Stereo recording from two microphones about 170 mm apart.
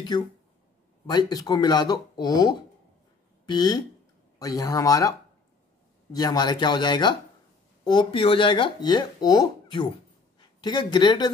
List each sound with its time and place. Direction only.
1.0 s speech: 20° left (ahead or behind)
6.1 s speech: 25° left (ahead or behind)